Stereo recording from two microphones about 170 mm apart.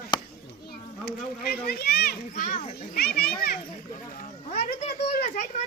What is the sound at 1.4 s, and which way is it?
Children playing, 65° left (ahead or behind).